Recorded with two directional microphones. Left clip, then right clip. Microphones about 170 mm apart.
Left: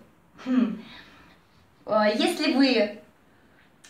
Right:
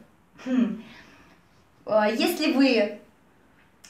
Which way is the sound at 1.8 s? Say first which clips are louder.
Right 1 dB; 20° right (ahead or behind).